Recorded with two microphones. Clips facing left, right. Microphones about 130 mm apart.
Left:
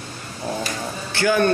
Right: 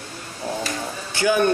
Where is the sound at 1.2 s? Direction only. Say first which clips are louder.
Even; 15° right (ahead or behind).